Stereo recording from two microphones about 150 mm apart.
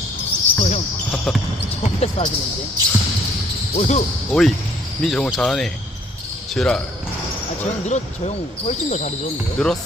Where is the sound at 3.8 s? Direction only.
50° left (ahead or behind).